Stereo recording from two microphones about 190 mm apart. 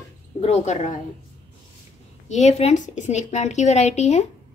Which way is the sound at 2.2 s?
40° left (ahead or behind).